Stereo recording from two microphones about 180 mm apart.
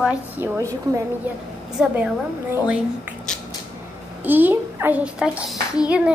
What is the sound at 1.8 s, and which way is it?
Speech, 5° right (ahead or behind).